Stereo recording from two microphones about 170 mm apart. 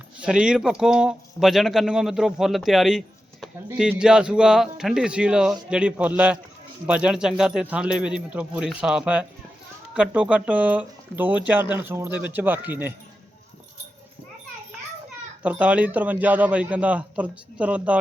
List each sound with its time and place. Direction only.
0.2 s a man's voice: 5° right (ahead or behind)
15.4 s a man's voice: 10° right (ahead or behind)